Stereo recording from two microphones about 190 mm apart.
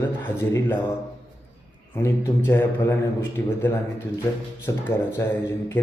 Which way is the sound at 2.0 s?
15° left (ahead or behind).